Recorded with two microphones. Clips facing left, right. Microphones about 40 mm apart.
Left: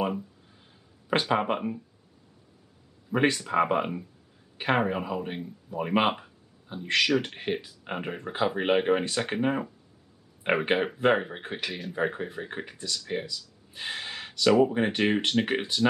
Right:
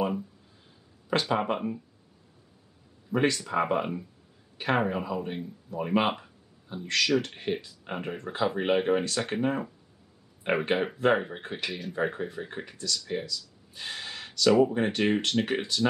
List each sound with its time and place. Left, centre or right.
1.4 s speech: centre
3.1 s speech: left
13.0 s a sound: centre
14.6 s speech: left